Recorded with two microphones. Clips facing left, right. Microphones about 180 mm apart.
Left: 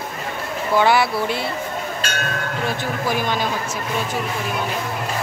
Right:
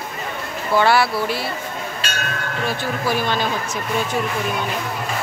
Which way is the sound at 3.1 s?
15° left (ahead or behind).